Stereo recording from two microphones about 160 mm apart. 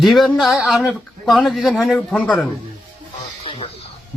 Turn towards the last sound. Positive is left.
turn(degrees=40)  # may be behind; listen again after turning